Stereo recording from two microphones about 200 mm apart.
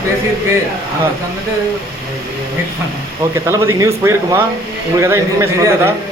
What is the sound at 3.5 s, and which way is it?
Speech, 15° right (ahead or behind).